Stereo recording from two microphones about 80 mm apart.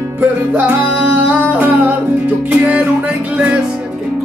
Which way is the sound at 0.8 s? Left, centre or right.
Right.